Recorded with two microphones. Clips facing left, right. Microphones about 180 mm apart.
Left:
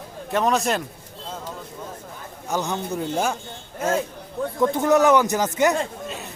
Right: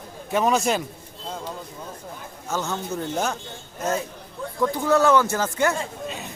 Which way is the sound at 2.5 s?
15° left (ahead or behind).